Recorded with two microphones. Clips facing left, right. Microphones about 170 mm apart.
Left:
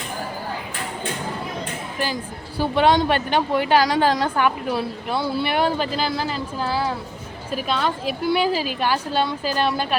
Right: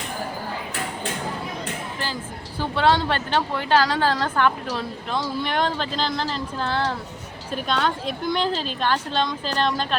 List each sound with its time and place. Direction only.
2.6 s speech: 15° left (ahead or behind)